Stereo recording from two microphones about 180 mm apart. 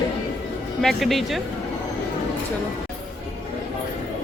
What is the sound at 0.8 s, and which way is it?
Speech, centre (ahead or behind).